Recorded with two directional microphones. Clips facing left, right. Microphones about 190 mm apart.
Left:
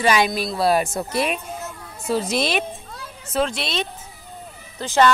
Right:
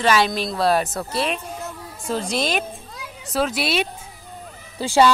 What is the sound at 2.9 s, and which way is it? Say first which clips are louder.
Children playing: right 1 dB; 15° right (ahead or behind).